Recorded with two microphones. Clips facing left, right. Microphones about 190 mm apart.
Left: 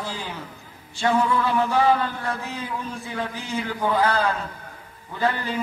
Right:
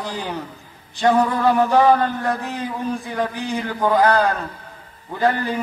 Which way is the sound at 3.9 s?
35° right (ahead or behind).